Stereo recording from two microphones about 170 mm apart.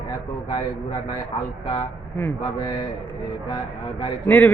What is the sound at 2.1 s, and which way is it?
Speech, 15° left (ahead or behind).